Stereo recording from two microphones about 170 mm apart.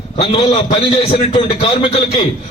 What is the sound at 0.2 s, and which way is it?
A man's voice, 35° left (ahead or behind).